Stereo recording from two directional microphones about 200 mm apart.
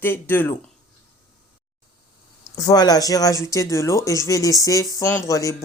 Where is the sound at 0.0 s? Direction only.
10° left (ahead or behind).